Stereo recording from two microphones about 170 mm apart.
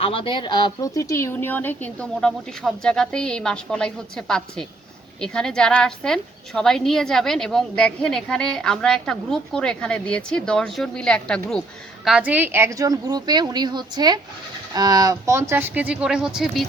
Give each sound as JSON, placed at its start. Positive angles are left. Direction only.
{"t": 0.0, "sound": "a woman's voice", "side_deg": 30}
{"t": 12.0, "sound": "a woman's voice", "side_deg": -5}